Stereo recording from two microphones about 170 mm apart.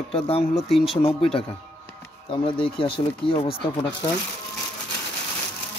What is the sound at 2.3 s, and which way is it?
Speech, 30° left (ahead or behind).